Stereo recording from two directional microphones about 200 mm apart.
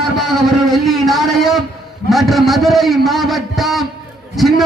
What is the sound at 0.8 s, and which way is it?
A man's voice, centre (ahead or behind).